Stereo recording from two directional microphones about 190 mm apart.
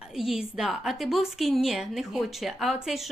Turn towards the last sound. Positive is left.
turn(degrees=0)  # may be behind; listen again after turning